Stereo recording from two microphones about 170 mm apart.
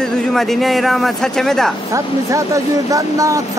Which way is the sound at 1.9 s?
20° right (ahead or behind).